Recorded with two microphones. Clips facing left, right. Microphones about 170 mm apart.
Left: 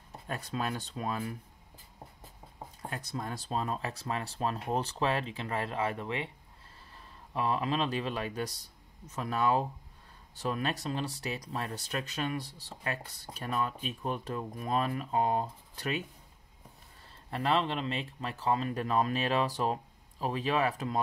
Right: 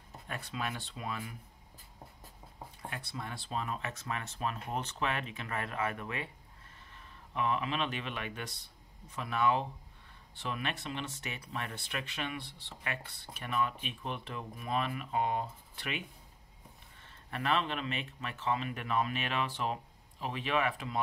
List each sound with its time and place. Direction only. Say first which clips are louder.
0.3 s speech: left 4 dB; 40° left (ahead or behind)
2.8 s speech: left 4 dB; 40° left (ahead or behind)
17.0 s speech: left 4 dB; 30° left (ahead or behind)